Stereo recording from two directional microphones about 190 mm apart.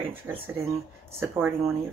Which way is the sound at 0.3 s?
10° right (ahead or behind).